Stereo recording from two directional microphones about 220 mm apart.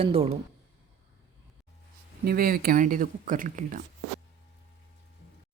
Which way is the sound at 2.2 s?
40° right (ahead or behind).